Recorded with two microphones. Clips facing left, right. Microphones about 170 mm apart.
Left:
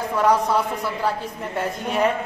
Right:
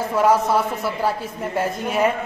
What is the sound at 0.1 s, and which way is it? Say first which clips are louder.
A woman's voice: right 2 dB; 5° right (ahead or behind).